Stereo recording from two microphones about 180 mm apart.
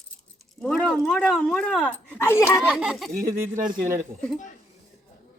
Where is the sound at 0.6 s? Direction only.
5° left (ahead or behind).